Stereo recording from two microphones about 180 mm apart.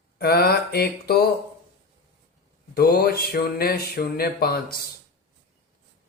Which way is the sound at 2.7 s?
60° left (ahead or behind).